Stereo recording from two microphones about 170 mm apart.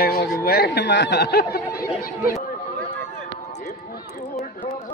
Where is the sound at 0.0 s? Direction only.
65° left (ahead or behind).